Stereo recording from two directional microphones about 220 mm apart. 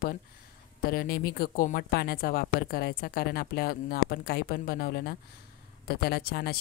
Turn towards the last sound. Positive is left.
turn(degrees=45)  # may be behind; listen again after turning